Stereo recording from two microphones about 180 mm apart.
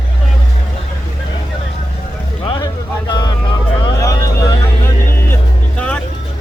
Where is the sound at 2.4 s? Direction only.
25° left (ahead or behind).